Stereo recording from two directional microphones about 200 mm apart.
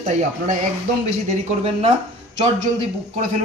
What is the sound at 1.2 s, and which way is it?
Speech, 30° right (ahead or behind).